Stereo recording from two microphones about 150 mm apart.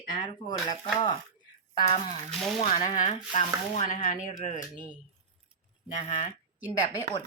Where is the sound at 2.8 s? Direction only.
50° left (ahead or behind).